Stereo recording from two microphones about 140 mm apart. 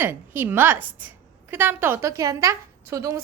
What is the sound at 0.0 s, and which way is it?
A woman's voice, 15° right (ahead or behind).